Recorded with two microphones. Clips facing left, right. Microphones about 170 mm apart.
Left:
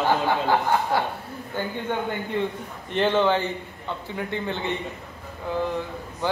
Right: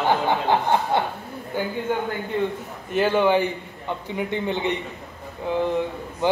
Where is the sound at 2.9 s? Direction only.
10° right (ahead or behind).